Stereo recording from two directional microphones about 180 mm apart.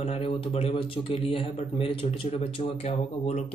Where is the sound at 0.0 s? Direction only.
35° left (ahead or behind).